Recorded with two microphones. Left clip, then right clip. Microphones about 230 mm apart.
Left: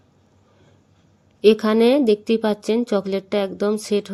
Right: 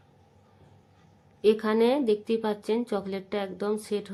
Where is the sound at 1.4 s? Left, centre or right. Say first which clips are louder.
Left 8 dB; left.